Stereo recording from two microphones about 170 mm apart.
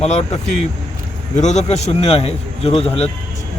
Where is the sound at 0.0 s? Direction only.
40° left (ahead or behind).